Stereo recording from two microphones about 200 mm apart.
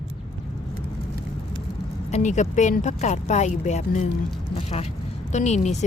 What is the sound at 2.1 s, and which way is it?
Speech, 35° left (ahead or behind).